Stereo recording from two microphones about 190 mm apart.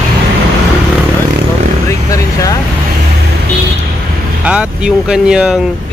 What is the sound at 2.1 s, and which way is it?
Vehicle, 15° left (ahead or behind).